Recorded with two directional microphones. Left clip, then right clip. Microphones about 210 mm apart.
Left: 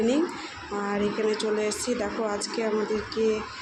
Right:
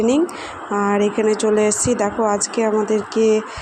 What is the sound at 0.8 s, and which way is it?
Speech, 35° right (ahead or behind).